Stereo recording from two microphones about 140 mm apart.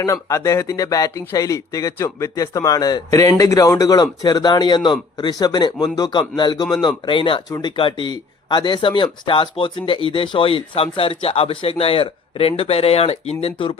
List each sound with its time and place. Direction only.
0.0 s speech: 20° left (ahead or behind); by 13.7 s 40° left (ahead or behind)